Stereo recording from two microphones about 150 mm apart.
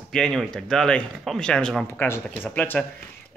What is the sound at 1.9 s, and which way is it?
Speech, 15° left (ahead or behind).